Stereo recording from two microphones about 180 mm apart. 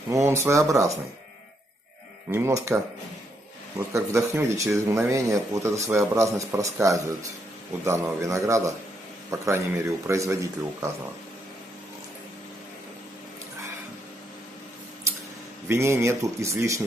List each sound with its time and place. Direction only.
0.1 s speech: 15° right (ahead or behind)
2.3 s speech: 15° right (ahead or behind)
3.9 s speech: 15° right (ahead or behind)
15.7 s speech: 15° right (ahead or behind)